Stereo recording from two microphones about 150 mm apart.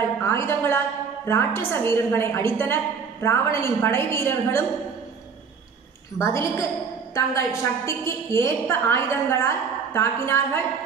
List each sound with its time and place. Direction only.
0.2 s a woman's voice: 20° left (ahead or behind)
6.1 s a woman's voice: 20° left (ahead or behind)